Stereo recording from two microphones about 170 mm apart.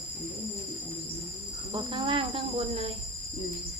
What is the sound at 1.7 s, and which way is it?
Speech, 30° right (ahead or behind).